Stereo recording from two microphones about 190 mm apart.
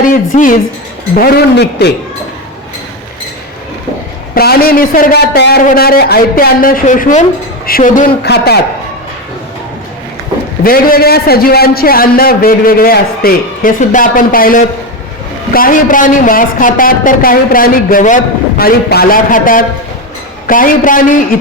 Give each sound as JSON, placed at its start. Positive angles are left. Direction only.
{"t": 0.0, "sound": "speech", "side_deg": 45}
{"t": 1.2, "sound": "speech", "side_deg": 60}
{"t": 4.4, "sound": "a man's voice", "side_deg": 50}
{"t": 10.6, "sound": "a man's voice", "side_deg": 50}